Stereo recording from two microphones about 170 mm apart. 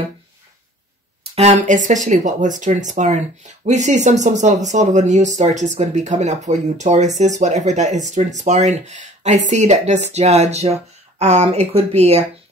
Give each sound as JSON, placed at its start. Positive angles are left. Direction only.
{"t": 1.3, "sound": "speech", "side_deg": -40}